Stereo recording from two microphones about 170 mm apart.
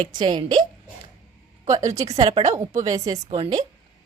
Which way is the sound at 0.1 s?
25° right (ahead or behind).